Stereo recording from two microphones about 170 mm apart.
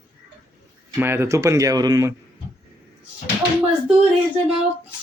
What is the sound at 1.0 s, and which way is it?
Speech, 15° right (ahead or behind).